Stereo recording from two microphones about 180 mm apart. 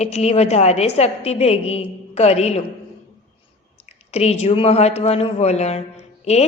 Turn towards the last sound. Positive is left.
turn(degrees=35)  # may be behind; listen again after turning